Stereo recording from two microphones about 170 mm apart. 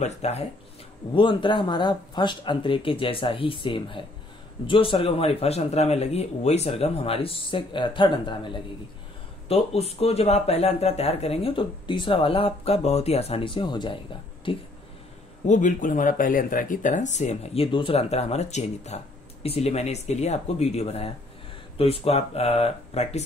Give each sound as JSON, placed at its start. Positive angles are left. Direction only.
{"t": 0.0, "sound": "speech", "side_deg": 40}
{"t": 1.1, "sound": "speech", "side_deg": 30}
{"t": 15.4, "sound": "speech", "side_deg": 45}